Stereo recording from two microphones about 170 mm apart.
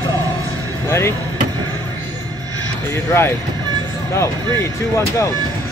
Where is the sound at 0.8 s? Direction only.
15° left (ahead or behind).